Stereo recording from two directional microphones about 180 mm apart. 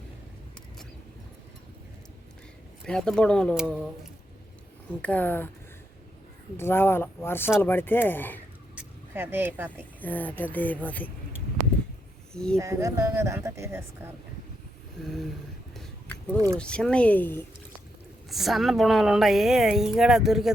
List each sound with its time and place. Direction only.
2.8 s a woman's voice: 5° left (ahead or behind)
5.0 s speech: 10° left (ahead or behind)
6.6 s speech: 10° left (ahead or behind)
8.7 s speech: 10° right (ahead or behind)
10.0 s speech: 10° left (ahead or behind)
12.3 s speech: 5° left (ahead or behind)
12.5 s a woman's voice: 15° right (ahead or behind)
15.0 s a woman's voice: centre (ahead or behind)
15.7 s a sound: 5° left (ahead or behind)
16.6 s speech: 5° left (ahead or behind)
18.3 s a woman's voice: centre (ahead or behind)